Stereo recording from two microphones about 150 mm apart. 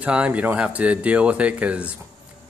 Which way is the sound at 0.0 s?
10° right (ahead or behind).